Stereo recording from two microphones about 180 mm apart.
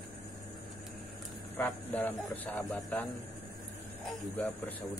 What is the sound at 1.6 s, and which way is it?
Speech, 10° left (ahead or behind).